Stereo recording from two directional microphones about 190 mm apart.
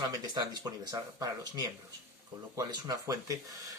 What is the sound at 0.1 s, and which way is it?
Speech, 20° right (ahead or behind).